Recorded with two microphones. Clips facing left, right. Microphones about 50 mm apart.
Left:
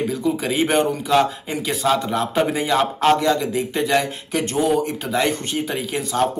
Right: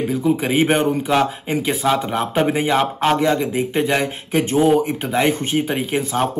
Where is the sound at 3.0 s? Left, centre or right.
Centre.